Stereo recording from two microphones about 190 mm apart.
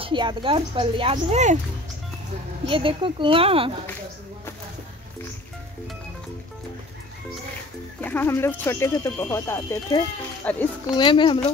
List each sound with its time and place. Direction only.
0.0 s speech: 25° right (ahead or behind)
2.6 s speech: 25° right (ahead or behind)
8.0 s speech: 10° left (ahead or behind)
11.0 s speech: 25° left (ahead or behind)